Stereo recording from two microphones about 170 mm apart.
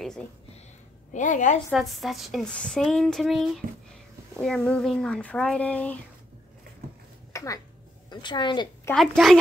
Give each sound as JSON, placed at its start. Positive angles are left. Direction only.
{"t": 0.0, "sound": "speech", "side_deg": 5}
{"t": 1.1, "sound": "a woman's voice", "side_deg": 50}
{"t": 1.7, "sound": "speech", "side_deg": 0}
{"t": 7.3, "sound": "a woman's voice", "side_deg": 20}
{"t": 8.9, "sound": "speech", "side_deg": 0}